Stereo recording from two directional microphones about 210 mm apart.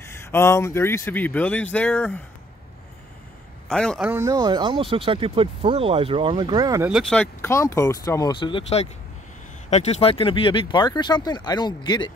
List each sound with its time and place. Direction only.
0.0 s speech: 10° left (ahead or behind)
3.6 s a man's voice: 5° left (ahead or behind)
4.1 s speech: 15° right (ahead or behind)
6.9 s speech: centre (ahead or behind)
7.4 s speech: 15° left (ahead or behind)